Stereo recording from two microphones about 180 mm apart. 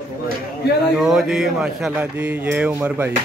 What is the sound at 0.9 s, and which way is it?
Speech, centre (ahead or behind).